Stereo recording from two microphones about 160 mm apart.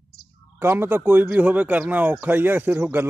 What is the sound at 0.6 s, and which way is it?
Speech, 15° right (ahead or behind).